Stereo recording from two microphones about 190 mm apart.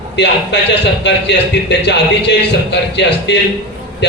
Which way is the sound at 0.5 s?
65° left (ahead or behind).